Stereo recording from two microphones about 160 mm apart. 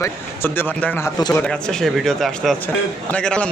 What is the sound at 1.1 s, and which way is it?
Speech, 25° left (ahead or behind).